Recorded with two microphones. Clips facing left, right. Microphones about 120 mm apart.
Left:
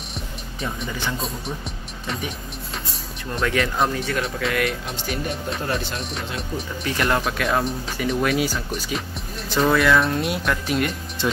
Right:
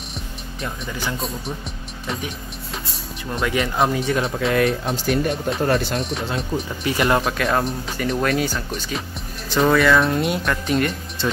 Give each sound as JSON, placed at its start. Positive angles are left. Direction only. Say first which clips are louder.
{"t": 0.6, "sound": "speech", "louder": "even", "side_deg": 0}
{"t": 3.3, "sound": "speech", "louder": "right 1 dB", "side_deg": 0}
{"t": 4.2, "sound": "speech", "louder": "right 4 dB", "side_deg": -30}
{"t": 5.9, "sound": "speech", "louder": "right 5 dB", "side_deg": 0}
{"t": 6.2, "sound": "speech", "louder": "right 5 dB", "side_deg": -30}
{"t": 6.8, "sound": "speech", "louder": "right 3 dB", "side_deg": -10}